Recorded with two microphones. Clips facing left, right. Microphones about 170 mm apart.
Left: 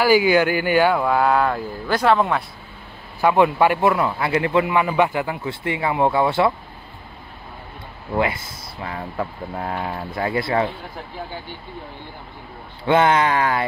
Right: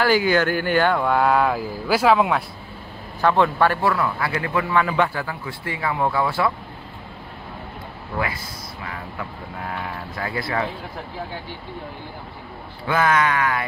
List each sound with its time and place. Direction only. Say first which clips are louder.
0.0 s speech: left 3 dB; 10° left (ahead or behind)
3.2 s a man's voice: left 2 dB; 10° left (ahead or behind)
8.2 s a man's voice: left 5 dB; 25° left (ahead or behind)
12.8 s a man's voice: left 3 dB; 25° left (ahead or behind)